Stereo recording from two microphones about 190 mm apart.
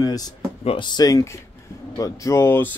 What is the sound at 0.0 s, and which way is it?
Speech, 20° left (ahead or behind).